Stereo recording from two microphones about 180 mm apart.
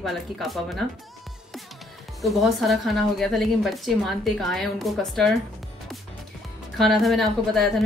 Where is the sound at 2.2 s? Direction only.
Centre (ahead or behind).